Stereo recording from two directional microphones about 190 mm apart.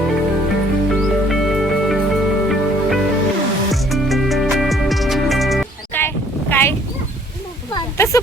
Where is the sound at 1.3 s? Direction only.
Centre (ahead or behind).